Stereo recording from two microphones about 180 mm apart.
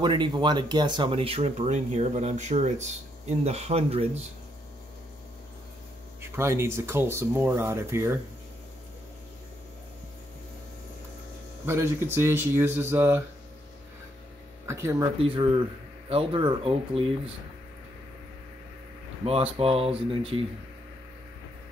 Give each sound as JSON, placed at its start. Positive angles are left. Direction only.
{"t": 0.0, "sound": "speech", "side_deg": -25}
{"t": 6.3, "sound": "speech", "side_deg": -15}
{"t": 11.6, "sound": "speech", "side_deg": -15}
{"t": 14.7, "sound": "speech", "side_deg": -15}
{"t": 15.2, "sound": "speech", "side_deg": -30}
{"t": 19.2, "sound": "speech", "side_deg": -30}